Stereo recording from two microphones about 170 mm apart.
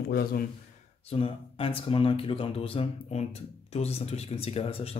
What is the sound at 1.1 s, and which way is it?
Speech, 30° left (ahead or behind).